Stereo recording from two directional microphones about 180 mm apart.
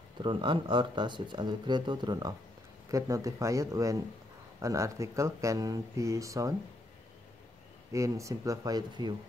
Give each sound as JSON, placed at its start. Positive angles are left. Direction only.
{"t": 0.2, "sound": "speech", "side_deg": -25}
{"t": 7.9, "sound": "speech", "side_deg": -15}